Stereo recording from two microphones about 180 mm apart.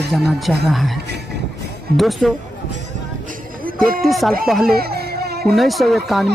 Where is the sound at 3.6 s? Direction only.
50° right (ahead or behind).